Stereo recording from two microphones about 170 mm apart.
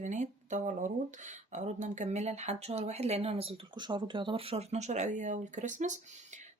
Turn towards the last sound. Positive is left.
turn(degrees=-45)  # may be behind; listen again after turning